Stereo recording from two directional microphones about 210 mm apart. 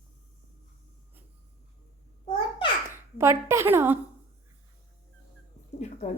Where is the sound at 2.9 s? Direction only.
10° right (ahead or behind).